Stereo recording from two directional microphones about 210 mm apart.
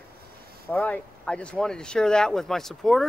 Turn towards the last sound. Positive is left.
turn(degrees=0)  # may be behind; listen again after turning